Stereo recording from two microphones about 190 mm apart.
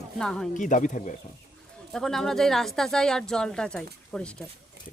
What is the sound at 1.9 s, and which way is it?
Speech, centre (ahead or behind).